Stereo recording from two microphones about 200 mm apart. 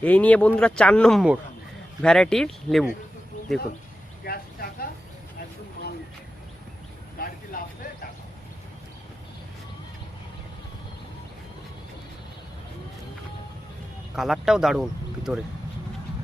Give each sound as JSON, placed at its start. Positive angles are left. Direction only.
{"t": 0.0, "sound": "speech", "side_deg": 5}
{"t": 4.2, "sound": "speech", "side_deg": 50}
{"t": 7.2, "sound": "a sound", "side_deg": 50}
{"t": 14.2, "sound": "speech", "side_deg": 0}